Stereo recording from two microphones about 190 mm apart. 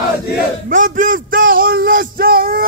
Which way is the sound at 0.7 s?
45° right (ahead or behind).